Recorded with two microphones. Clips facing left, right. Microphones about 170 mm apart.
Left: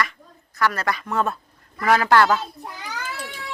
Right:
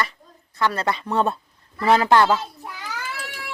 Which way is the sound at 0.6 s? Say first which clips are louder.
Right 1 dB; 25° right (ahead or behind).